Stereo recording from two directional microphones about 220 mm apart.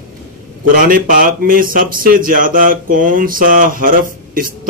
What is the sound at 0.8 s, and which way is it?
Speech, 40° right (ahead or behind).